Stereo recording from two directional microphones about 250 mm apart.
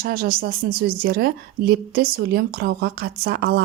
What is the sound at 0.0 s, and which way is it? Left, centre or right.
Speech, right.